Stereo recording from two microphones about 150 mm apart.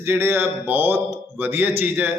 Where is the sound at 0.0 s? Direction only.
15° right (ahead or behind).